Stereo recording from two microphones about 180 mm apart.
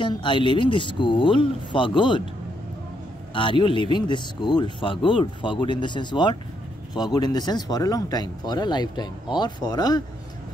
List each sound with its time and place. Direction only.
0.0 s speech: 25° left (ahead or behind)
3.3 s speech: 30° left (ahead or behind)